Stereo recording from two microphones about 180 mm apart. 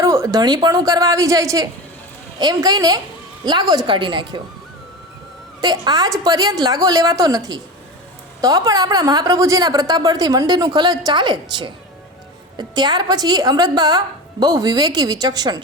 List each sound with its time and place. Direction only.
0.0 s a woman's voice: 15° right (ahead or behind)
5.5 s a woman's voice: 25° right (ahead or behind)